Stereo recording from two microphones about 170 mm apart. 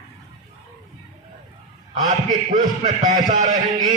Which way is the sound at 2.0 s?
50° right (ahead or behind).